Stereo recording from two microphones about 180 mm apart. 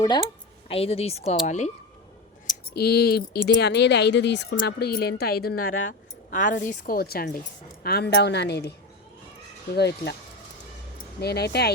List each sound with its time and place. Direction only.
0.7 s speech: 35° left (ahead or behind)
2.7 s speech: 60° left (ahead or behind)
4.6 s a woman's voice: 65° left (ahead or behind)
9.7 s a woman's voice: 65° left (ahead or behind)
11.2 s a woman's voice: 65° left (ahead or behind)